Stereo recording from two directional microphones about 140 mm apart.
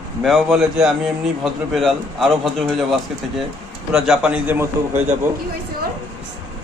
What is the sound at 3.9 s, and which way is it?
Speech, 5° right (ahead or behind).